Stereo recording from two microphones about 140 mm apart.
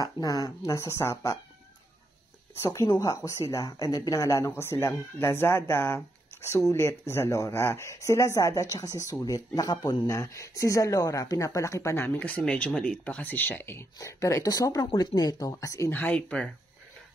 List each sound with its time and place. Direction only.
0.0 s speech: 25° left (ahead or behind)
2.6 s speech: 25° left (ahead or behind)
15.9 s speech: 10° left (ahead or behind)